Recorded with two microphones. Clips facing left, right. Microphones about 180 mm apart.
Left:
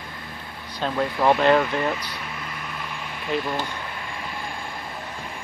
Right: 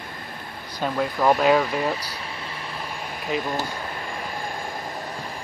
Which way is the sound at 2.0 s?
35° right (ahead or behind).